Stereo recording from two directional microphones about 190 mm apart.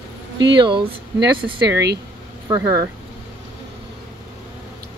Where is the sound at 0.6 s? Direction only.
25° right (ahead or behind).